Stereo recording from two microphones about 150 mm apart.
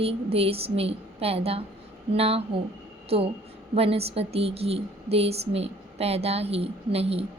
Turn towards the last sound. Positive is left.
turn(degrees=-40)  # may be behind; listen again after turning